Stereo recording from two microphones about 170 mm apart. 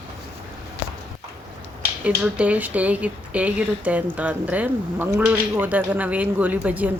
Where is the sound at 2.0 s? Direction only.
5° right (ahead or behind).